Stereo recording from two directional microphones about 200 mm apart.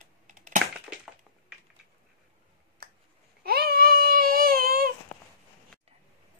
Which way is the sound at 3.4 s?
50° right (ahead or behind).